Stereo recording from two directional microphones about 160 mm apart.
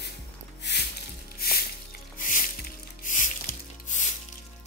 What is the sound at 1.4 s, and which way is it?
Music, 70° left (ahead or behind).